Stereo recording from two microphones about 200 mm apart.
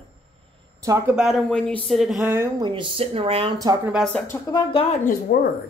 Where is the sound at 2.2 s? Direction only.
15° right (ahead or behind).